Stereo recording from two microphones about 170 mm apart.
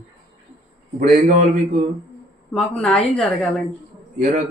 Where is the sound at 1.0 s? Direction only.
45° right (ahead or behind).